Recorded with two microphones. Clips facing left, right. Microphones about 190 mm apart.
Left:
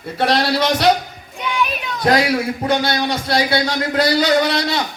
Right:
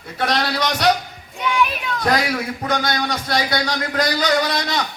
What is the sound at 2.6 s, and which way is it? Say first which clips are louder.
A man's voice: left 2 dB; 30° left (ahead or behind).